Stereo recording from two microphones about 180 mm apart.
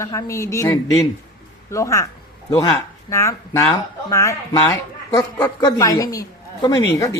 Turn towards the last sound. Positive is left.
turn(degrees=20)  # may be behind; listen again after turning